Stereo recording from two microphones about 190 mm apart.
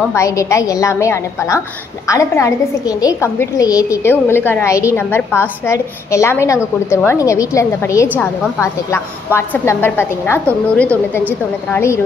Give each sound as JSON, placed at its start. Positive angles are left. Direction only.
{"t": 0.1, "sound": "a woman's voice", "side_deg": 15}